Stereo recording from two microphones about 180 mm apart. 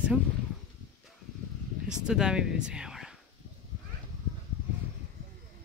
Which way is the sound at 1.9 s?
5° right (ahead or behind).